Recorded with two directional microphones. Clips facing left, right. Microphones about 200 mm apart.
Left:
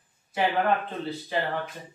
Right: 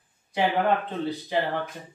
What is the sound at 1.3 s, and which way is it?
Speech, 15° right (ahead or behind).